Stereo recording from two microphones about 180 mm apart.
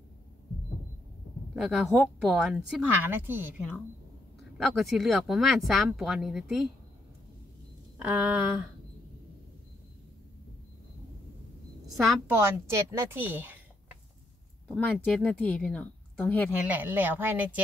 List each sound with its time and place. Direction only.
1.5 s a woman's voice: 5° right (ahead or behind)
4.6 s a woman's voice: centre (ahead or behind)
8.0 s a woman's voice: 10° right (ahead or behind)
11.9 s a woman's voice: centre (ahead or behind)
12.3 s speech: 15° right (ahead or behind)
14.7 s speech: 5° left (ahead or behind)
16.6 s a woman's voice: 10° right (ahead or behind)